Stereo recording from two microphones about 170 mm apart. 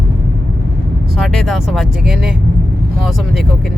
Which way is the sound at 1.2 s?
Centre (ahead or behind).